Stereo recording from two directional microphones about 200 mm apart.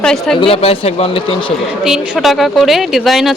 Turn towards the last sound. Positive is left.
turn(degrees=0)  # may be behind; listen again after turning